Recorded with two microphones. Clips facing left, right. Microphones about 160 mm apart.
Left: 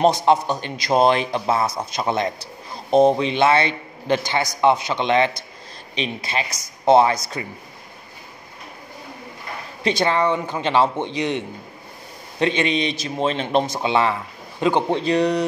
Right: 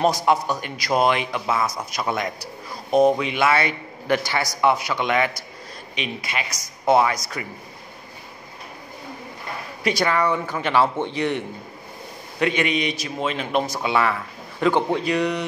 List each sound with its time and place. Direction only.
0.0 s a man's voice: 25° left (ahead or behind)
9.8 s a man's voice: 25° left (ahead or behind)